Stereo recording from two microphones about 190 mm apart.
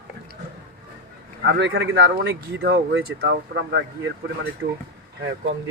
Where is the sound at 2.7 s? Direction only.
70° right (ahead or behind).